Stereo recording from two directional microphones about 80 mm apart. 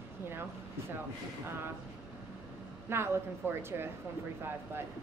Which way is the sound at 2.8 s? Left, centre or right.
Right.